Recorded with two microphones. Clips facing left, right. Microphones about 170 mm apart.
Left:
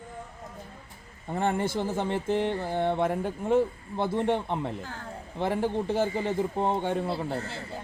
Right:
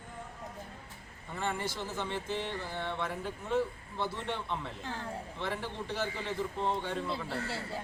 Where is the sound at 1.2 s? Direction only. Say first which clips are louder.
Left 8 dB; 55° left (ahead or behind).